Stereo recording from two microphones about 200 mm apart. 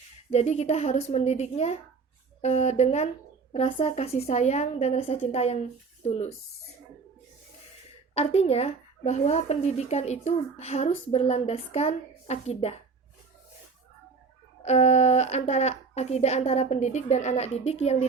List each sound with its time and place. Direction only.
0.3 s speech: 35° left (ahead or behind)
8.1 s speech: 30° left (ahead or behind)
14.6 s speech: 35° left (ahead or behind)